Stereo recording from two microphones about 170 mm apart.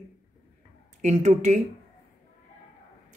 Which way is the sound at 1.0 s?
45° right (ahead or behind).